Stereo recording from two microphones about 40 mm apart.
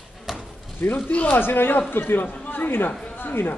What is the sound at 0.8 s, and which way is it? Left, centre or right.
Speech, left.